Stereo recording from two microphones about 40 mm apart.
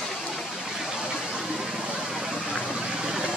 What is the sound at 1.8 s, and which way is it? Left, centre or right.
Vehicle, centre.